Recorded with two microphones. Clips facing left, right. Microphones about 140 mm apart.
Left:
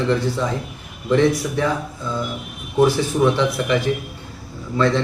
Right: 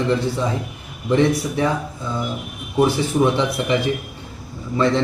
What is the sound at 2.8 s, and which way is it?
A man's voice, 20° right (ahead or behind).